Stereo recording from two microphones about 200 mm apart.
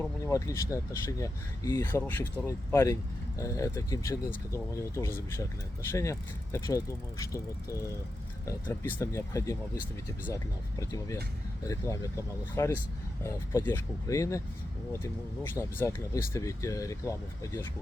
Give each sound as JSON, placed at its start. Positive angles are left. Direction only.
{"t": 0.3, "sound": "speech", "side_deg": 15}
{"t": 8.4, "sound": "speech", "side_deg": 15}
{"t": 15.5, "sound": "speech", "side_deg": 10}